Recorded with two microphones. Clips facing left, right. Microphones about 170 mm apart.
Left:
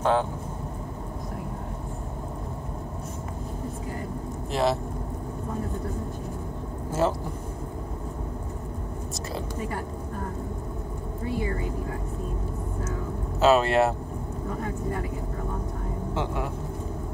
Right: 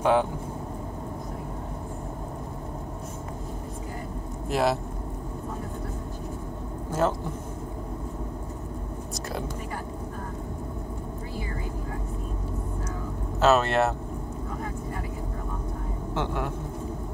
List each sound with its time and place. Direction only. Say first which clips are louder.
0.0 s speech: right 1 dB; 15° right (ahead or behind)
4.5 s speech: even; centre (ahead or behind)
6.9 s speech: even; 5° left (ahead or behind)
13.4 s speech: left 1 dB; 5° left (ahead or behind)